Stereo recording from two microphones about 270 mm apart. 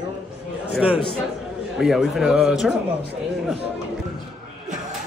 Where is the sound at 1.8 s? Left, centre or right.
Centre.